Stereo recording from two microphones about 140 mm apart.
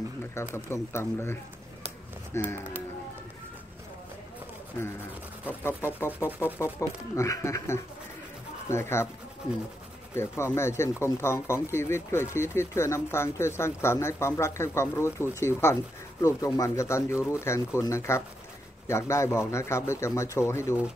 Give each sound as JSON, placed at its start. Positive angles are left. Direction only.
{"t": 0.3, "sound": "speech", "side_deg": 20}
{"t": 5.6, "sound": "speech", "side_deg": 15}
{"t": 10.1, "sound": "speech", "side_deg": 20}